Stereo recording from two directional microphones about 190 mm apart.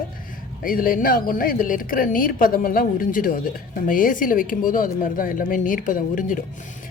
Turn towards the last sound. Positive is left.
turn(degrees=45)  # may be behind; listen again after turning